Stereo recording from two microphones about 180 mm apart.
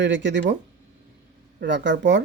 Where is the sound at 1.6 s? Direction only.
75° right (ahead or behind).